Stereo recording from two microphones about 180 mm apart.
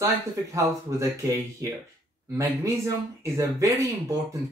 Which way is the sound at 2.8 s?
15° right (ahead or behind).